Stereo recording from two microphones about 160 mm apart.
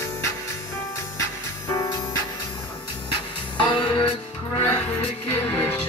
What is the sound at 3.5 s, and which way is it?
Music, 30° left (ahead or behind).